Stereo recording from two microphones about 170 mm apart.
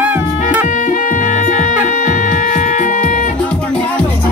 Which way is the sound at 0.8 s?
50° left (ahead or behind).